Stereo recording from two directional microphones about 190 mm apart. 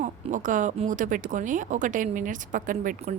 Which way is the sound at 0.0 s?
40° right (ahead or behind).